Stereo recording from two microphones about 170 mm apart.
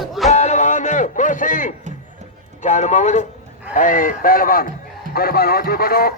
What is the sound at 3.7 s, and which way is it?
Speech, 50° left (ahead or behind).